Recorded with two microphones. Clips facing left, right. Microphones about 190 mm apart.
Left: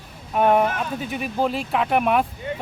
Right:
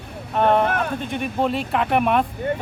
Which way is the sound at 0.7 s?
60° right (ahead or behind).